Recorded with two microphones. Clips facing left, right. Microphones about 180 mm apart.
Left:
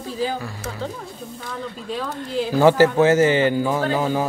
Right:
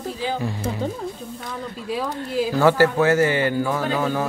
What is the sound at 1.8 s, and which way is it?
Speech, 5° right (ahead or behind).